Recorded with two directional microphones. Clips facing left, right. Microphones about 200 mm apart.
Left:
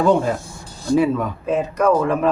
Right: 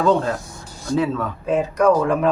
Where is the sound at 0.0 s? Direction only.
10° left (ahead or behind).